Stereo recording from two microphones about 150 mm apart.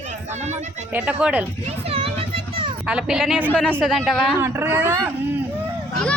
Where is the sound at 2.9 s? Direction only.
5° right (ahead or behind).